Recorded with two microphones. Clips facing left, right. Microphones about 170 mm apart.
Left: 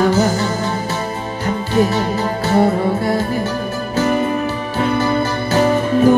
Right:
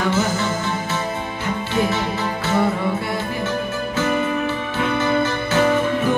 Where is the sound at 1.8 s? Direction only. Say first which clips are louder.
Left 5 dB; 35° left (ahead or behind).